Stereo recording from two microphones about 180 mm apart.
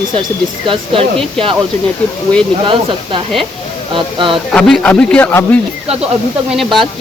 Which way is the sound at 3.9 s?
30° right (ahead or behind).